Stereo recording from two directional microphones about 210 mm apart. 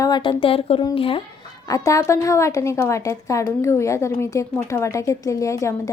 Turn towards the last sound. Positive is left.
turn(degrees=15)  # may be behind; listen again after turning